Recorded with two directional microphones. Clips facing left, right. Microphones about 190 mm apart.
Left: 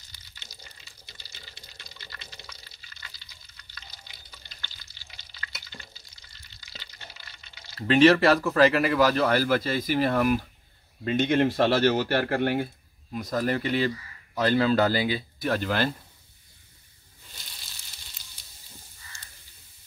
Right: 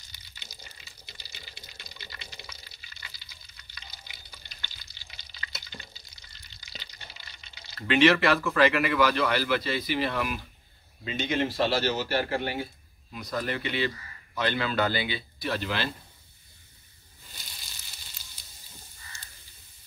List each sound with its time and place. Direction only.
0.1 s water: 15° right (ahead or behind)
4.5 s stir: 15° right (ahead or behind)
6.6 s water: 15° right (ahead or behind)
7.8 s speech: 35° left (ahead or behind); by 12.6 s 55° left (ahead or behind)
13.1 s speech: 45° left (ahead or behind)